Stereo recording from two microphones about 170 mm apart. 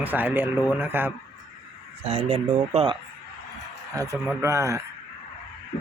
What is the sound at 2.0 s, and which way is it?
Speech, 35° right (ahead or behind).